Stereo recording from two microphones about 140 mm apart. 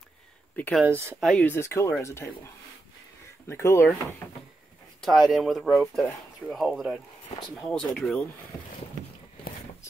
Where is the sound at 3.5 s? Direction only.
20° left (ahead or behind).